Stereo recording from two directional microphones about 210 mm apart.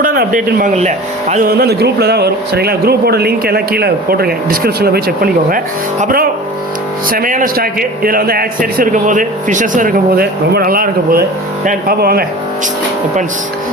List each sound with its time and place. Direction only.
0.0 s speech: 40° right (ahead or behind)